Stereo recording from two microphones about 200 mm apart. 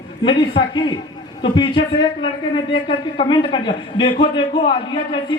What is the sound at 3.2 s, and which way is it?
A man's voice, 25° left (ahead or behind).